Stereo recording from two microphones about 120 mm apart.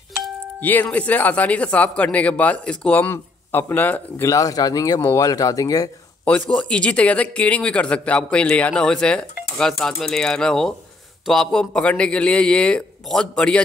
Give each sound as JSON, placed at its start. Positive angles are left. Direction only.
{"t": 0.6, "sound": "a man's voice", "side_deg": 15}
{"t": 4.3, "sound": "speech", "side_deg": 30}
{"t": 6.2, "sound": "a man's voice", "side_deg": 10}